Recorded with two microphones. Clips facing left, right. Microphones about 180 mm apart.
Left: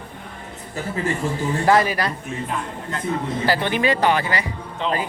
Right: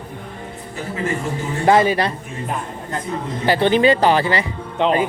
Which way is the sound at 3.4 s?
25° right (ahead or behind).